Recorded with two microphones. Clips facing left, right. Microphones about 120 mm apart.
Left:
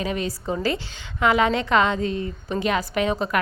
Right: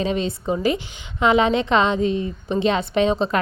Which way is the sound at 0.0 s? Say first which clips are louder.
Right 4 dB; 25° right (ahead or behind).